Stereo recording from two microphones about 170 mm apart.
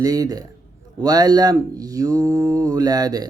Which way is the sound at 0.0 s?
20° right (ahead or behind).